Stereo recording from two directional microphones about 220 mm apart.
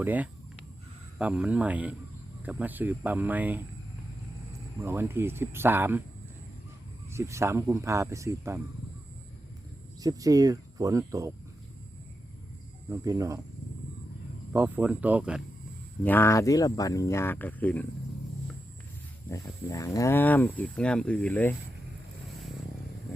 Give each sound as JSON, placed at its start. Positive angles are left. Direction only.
{"t": 0.0, "sound": "speech", "side_deg": -5}
{"t": 4.8, "sound": "speech", "side_deg": -10}
{"t": 7.1, "sound": "speech", "side_deg": -10}
{"t": 10.0, "sound": "speech", "side_deg": -15}
{"t": 12.9, "sound": "speech", "side_deg": -15}
{"t": 14.5, "sound": "speech", "side_deg": -10}
{"t": 16.0, "sound": "speech", "side_deg": 10}
{"t": 19.3, "sound": "speech", "side_deg": 15}